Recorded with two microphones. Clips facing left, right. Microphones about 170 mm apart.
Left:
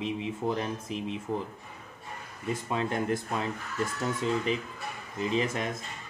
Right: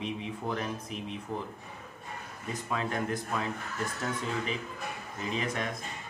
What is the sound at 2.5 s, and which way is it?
Speech, 25° left (ahead or behind).